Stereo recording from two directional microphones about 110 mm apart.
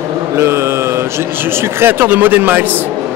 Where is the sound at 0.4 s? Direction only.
25° right (ahead or behind).